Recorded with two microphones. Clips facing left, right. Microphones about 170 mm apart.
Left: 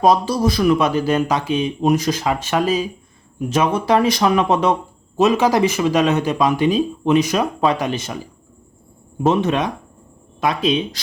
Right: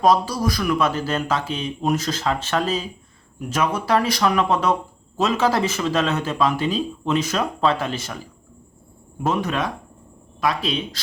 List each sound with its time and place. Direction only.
0.0 s speech: 20° left (ahead or behind)